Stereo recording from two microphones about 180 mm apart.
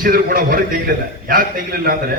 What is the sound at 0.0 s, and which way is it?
A man's voice, 55° right (ahead or behind).